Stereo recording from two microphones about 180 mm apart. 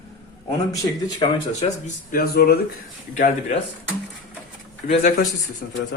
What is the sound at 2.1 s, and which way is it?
Speech, 60° left (ahead or behind).